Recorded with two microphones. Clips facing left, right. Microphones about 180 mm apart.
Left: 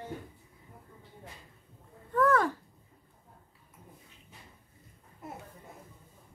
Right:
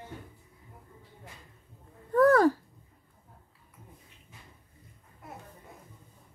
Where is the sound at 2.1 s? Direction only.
35° right (ahead or behind).